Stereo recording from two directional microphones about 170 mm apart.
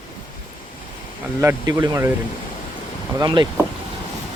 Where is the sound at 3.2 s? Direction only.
25° right (ahead or behind).